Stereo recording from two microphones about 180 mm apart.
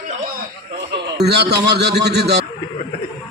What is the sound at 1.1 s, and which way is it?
A man's voice, 65° right (ahead or behind).